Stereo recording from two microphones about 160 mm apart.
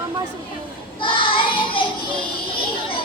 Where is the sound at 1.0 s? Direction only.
30° left (ahead or behind).